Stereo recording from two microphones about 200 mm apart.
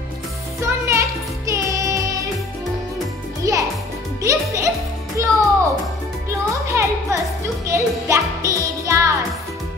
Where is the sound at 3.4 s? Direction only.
15° right (ahead or behind).